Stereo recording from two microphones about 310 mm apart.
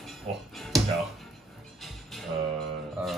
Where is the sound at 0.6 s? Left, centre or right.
Centre.